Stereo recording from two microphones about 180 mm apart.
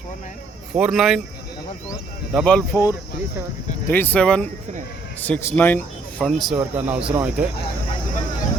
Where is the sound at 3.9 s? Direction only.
10° left (ahead or behind); by 7.4 s 10° right (ahead or behind).